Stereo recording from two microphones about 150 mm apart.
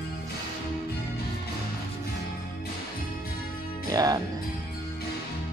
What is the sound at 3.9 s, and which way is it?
Music, 25° right (ahead or behind).